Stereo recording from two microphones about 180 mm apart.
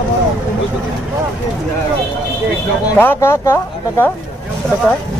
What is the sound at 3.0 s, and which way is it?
Speech, 15° left (ahead or behind).